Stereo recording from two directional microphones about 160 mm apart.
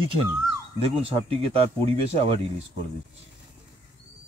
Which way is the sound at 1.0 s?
35° right (ahead or behind).